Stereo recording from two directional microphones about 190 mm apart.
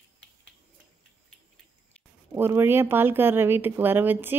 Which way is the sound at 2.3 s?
10° right (ahead or behind).